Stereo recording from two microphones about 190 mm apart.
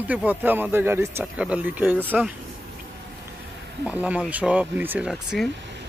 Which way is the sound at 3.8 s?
5° right (ahead or behind).